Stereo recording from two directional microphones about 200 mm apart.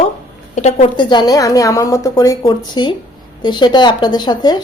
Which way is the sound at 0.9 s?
20° left (ahead or behind).